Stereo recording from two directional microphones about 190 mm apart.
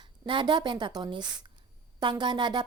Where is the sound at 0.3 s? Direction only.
25° right (ahead or behind).